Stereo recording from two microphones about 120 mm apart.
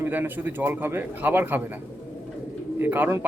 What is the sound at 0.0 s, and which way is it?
Speech, 15° right (ahead or behind).